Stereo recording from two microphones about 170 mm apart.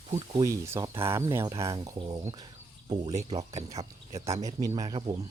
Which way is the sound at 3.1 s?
40° right (ahead or behind).